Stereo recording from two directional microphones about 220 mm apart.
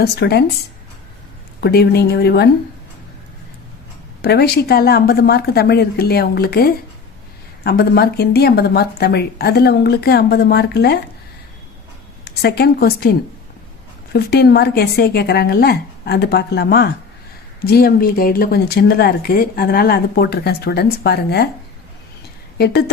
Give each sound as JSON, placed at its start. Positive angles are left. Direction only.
{"t": 0.0, "sound": "speech", "side_deg": 45}
{"t": 1.6, "sound": "speech", "side_deg": 45}
{"t": 4.2, "sound": "speech", "side_deg": 45}
{"t": 12.2, "sound": "a woman's voice", "side_deg": 45}
{"t": 22.5, "sound": "a woman's voice", "side_deg": 45}